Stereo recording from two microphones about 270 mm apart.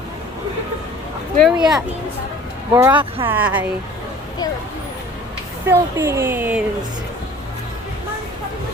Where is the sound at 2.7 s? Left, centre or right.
Centre.